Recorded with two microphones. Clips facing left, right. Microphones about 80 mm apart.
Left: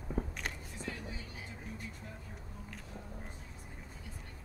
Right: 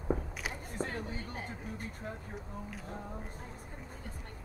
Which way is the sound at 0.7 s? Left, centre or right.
Right.